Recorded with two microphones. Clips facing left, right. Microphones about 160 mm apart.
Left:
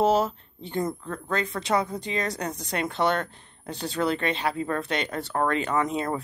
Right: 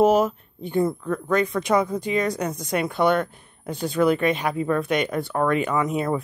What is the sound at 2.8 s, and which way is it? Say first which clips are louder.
Speech: right 4 dB; 10° right (ahead or behind).